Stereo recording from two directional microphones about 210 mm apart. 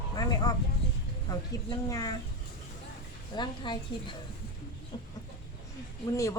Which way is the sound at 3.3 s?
20° left (ahead or behind).